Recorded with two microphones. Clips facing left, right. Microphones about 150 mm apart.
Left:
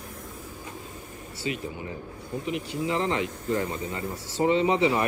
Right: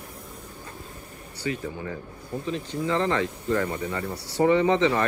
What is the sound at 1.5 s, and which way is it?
Speech, 20° left (ahead or behind).